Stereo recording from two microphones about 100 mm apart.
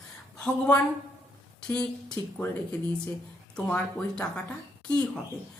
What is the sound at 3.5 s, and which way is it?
Speech, 10° left (ahead or behind).